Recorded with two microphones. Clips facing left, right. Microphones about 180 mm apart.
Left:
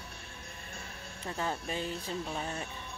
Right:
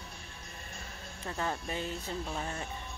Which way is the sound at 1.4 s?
20° left (ahead or behind).